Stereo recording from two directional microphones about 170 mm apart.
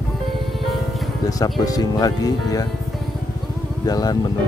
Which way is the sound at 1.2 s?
20° left (ahead or behind).